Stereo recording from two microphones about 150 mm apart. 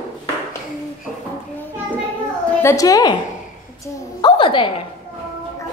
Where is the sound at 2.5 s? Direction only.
20° left (ahead or behind).